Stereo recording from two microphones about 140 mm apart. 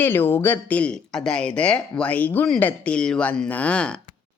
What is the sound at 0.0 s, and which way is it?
Speech, 15° left (ahead or behind).